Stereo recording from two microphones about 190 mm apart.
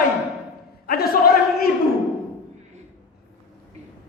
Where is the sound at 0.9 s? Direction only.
50° left (ahead or behind).